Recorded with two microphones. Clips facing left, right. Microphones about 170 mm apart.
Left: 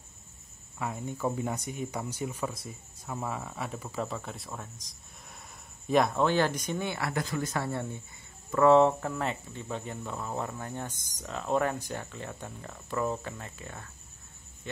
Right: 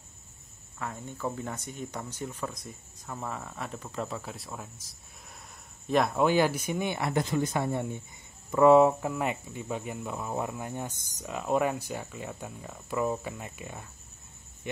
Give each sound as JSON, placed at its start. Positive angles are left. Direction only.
{"t": 0.7, "sound": "speech", "side_deg": 10}
{"t": 5.9, "sound": "speech", "side_deg": 0}
{"t": 6.1, "sound": "speech", "side_deg": -10}